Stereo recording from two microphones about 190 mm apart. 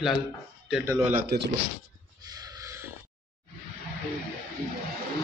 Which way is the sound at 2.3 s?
20° right (ahead or behind).